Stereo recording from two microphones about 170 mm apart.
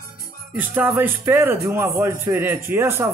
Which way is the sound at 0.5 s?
10° right (ahead or behind).